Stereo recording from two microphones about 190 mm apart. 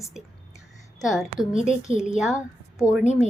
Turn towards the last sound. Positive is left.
turn(degrees=40)  # may be behind; listen again after turning